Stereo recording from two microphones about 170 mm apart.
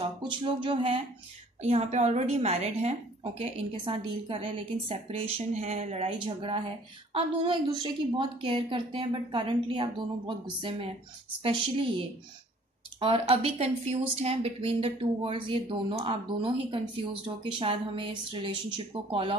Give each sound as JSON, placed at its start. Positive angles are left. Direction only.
{"t": 0.0, "sound": "a woman's voice", "side_deg": -30}
{"t": 13.0, "sound": "a woman's voice", "side_deg": -35}